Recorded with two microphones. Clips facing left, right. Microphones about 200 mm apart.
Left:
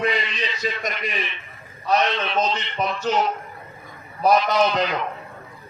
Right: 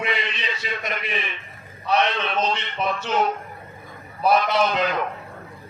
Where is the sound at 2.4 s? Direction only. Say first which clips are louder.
Even; 40° left (ahead or behind).